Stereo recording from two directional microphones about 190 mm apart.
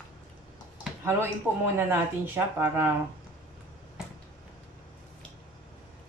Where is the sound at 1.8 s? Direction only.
10° right (ahead or behind).